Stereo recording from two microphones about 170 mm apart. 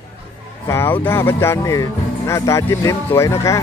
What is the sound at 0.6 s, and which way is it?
Speech, 15° left (ahead or behind).